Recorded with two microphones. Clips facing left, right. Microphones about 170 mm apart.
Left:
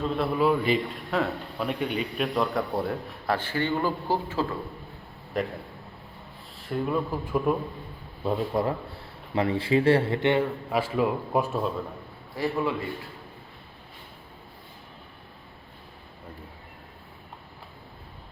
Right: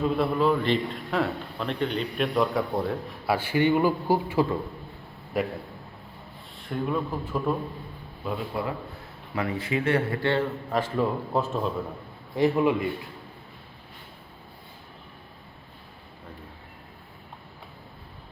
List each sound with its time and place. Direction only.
0.0 s a man's voice: 5° right (ahead or behind)
0.3 s a man's voice: 5° left (ahead or behind)
3.2 s a man's voice: 10° right (ahead or behind)
6.6 s a man's voice: 5° left (ahead or behind)
8.2 s speech: 40° left (ahead or behind)
9.3 s a man's voice: 30° left (ahead or behind); by 11.6 s 10° left (ahead or behind)
12.4 s a man's voice: 20° right (ahead or behind)